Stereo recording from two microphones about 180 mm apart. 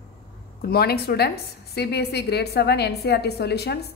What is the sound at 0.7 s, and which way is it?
A woman's voice, 60° left (ahead or behind).